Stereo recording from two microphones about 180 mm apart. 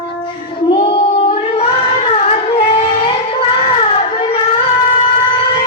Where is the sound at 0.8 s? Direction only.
30° left (ahead or behind).